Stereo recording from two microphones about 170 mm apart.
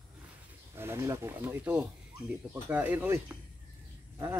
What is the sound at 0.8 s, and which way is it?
Speech, 15° right (ahead or behind).